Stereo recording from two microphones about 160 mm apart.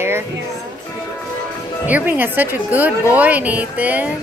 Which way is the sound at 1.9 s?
10° right (ahead or behind).